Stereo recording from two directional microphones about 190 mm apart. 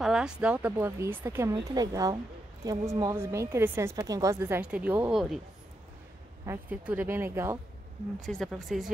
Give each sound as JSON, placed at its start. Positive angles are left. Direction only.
{"t": 0.0, "sound": "a woman's voice", "side_deg": -5}
{"t": 6.4, "sound": "a woman's voice", "side_deg": -10}
{"t": 8.2, "sound": "speech", "side_deg": 0}